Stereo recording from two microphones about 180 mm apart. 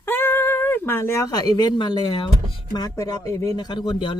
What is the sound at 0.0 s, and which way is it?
Speech, 10° left (ahead or behind).